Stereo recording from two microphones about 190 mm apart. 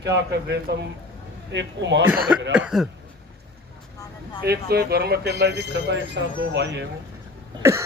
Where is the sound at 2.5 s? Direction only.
5° right (ahead or behind).